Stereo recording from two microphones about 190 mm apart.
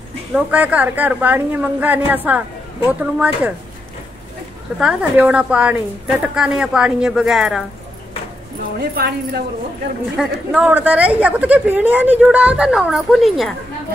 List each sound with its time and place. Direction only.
0.3 s speech: 5° right (ahead or behind)
4.7 s a woman's voice: centre (ahead or behind)
8.7 s speech: 55° right (ahead or behind)
10.1 s speech: 5° right (ahead or behind)